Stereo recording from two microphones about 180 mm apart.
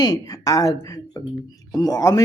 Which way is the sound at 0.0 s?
20° left (ahead or behind).